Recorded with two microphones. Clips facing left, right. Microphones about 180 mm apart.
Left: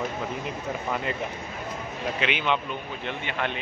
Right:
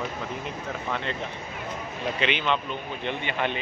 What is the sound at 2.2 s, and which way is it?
Speech, 10° left (ahead or behind).